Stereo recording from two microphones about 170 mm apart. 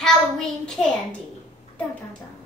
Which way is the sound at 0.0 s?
5° left (ahead or behind).